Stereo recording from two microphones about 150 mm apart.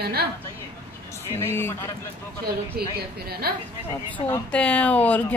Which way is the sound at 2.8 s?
90° right.